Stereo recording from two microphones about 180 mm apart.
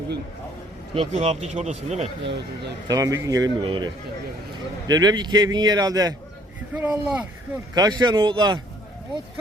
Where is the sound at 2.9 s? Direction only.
20° right (ahead or behind).